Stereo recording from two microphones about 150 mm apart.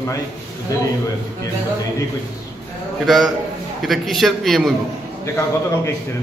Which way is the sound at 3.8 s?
Centre (ahead or behind).